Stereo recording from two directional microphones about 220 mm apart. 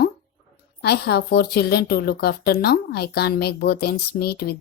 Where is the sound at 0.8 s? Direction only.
45° left (ahead or behind).